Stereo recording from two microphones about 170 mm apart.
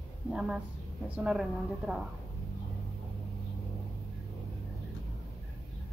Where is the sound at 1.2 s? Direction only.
5° right (ahead or behind).